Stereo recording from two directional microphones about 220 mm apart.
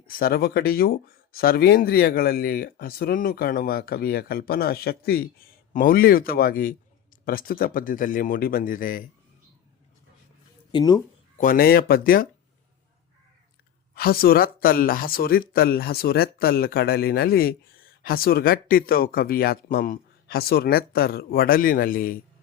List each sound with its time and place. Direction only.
0.1 s speech: 40° left (ahead or behind)
10.7 s speech: 20° left (ahead or behind)
11.3 s speech: 40° left (ahead or behind)
13.9 s speech: 45° left (ahead or behind)